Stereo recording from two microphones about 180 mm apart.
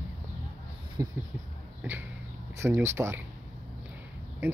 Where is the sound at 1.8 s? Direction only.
10° right (ahead or behind).